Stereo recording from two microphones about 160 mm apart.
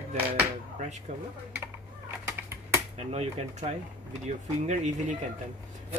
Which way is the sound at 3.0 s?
40° right (ahead or behind).